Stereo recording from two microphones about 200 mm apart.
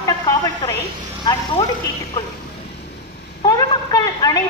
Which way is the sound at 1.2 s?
25° left (ahead or behind).